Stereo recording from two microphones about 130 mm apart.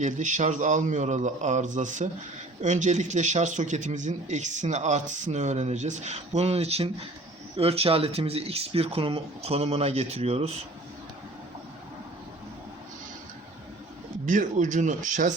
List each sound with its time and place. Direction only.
0.0 s a man's voice: 70° right (ahead or behind); by 10.5 s 50° right (ahead or behind)
14.3 s a man's voice: 75° right (ahead or behind)